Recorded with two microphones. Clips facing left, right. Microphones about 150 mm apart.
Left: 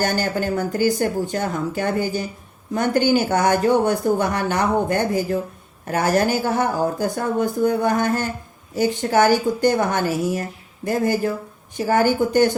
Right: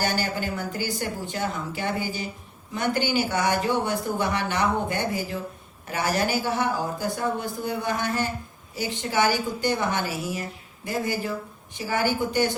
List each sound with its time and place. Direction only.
0.0 s speech: 45° left (ahead or behind)